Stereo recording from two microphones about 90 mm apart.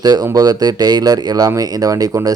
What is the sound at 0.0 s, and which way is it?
Speech, 45° right (ahead or behind).